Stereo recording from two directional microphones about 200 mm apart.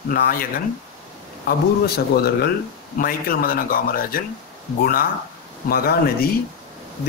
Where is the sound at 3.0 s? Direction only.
50° left (ahead or behind).